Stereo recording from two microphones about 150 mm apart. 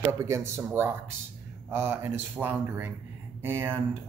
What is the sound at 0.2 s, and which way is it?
Speech, 20° right (ahead or behind).